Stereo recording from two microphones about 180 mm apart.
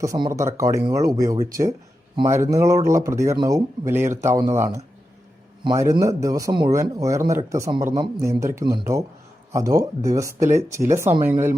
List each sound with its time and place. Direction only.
0.0 s speech: 20° right (ahead or behind)